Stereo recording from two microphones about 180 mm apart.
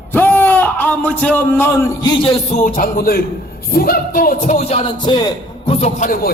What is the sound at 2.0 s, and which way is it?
Music, 25° left (ahead or behind).